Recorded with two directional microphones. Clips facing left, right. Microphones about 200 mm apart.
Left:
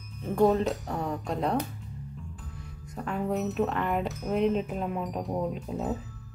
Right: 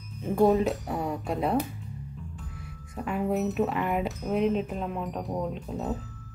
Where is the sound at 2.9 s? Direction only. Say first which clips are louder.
Right 2 dB; 5° right (ahead or behind).